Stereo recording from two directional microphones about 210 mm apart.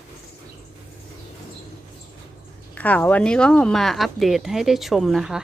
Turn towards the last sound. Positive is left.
turn(degrees=-5)  # may be behind; listen again after turning